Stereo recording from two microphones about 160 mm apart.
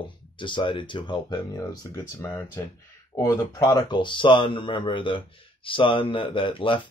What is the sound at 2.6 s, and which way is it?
Speech, 15° left (ahead or behind).